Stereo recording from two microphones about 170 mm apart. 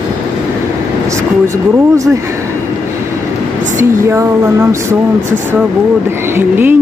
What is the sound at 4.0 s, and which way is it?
Speech, 15° right (ahead or behind).